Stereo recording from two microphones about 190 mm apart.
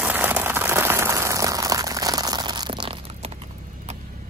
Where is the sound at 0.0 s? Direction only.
10° right (ahead or behind); by 3.3 s 25° right (ahead or behind).